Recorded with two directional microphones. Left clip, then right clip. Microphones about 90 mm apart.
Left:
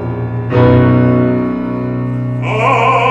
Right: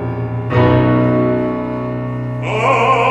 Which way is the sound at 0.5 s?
30° left (ahead or behind).